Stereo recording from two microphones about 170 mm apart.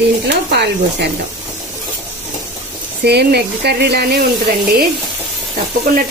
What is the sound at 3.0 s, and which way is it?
Speech, 75° right (ahead or behind).